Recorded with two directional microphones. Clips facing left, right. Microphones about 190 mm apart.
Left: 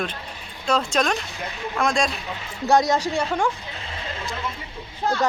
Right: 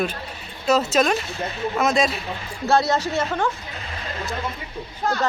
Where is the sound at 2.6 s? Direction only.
15° left (ahead or behind).